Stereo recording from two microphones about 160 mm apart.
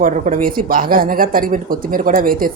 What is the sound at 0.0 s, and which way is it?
Speech, 60° right (ahead or behind).